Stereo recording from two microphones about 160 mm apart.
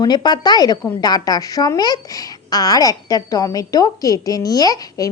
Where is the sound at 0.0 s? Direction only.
25° left (ahead or behind).